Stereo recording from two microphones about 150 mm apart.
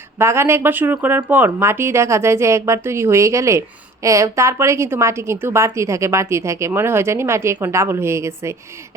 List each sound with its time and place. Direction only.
0.2 s a woman's voice: 15° right (ahead or behind)